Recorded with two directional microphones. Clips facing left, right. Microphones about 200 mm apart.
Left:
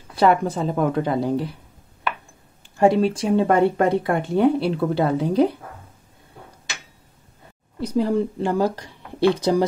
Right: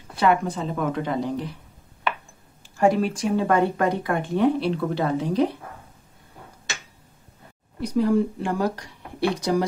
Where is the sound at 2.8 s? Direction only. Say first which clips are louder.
Left 3 dB; 30° left (ahead or behind).